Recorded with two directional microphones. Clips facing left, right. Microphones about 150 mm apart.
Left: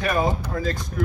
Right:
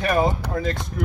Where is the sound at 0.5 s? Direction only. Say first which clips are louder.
Right 2 dB; 25° right (ahead or behind).